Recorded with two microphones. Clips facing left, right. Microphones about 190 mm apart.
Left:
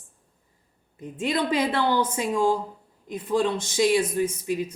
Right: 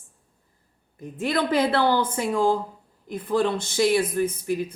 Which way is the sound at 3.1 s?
20° left (ahead or behind).